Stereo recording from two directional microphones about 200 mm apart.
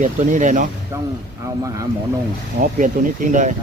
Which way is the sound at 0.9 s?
15° right (ahead or behind).